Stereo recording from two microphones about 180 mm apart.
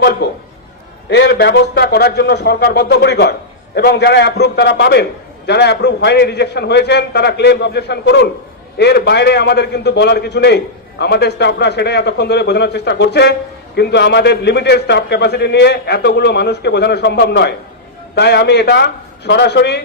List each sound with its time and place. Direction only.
0.2 s a man's voice: 70° left (ahead or behind)